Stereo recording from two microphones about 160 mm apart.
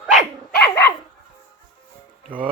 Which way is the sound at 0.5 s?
10° left (ahead or behind).